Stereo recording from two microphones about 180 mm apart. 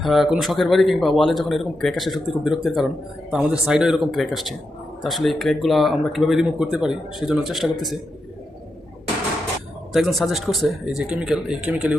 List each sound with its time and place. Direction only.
0.0 s speech: centre (ahead or behind)
9.9 s speech: centre (ahead or behind)